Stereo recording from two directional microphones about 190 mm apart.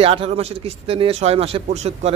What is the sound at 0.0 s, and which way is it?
A man's voice, 30° right (ahead or behind).